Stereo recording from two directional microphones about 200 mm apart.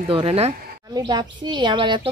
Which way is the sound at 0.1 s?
30° right (ahead or behind).